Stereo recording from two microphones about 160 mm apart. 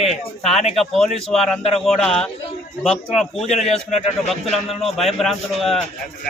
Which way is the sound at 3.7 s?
45° left (ahead or behind).